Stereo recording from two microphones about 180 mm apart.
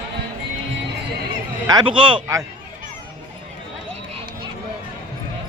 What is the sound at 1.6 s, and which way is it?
Speech, 25° right (ahead or behind).